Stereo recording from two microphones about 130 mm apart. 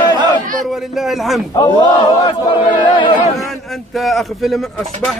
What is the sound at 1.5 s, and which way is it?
Battle cry, 30° left (ahead or behind).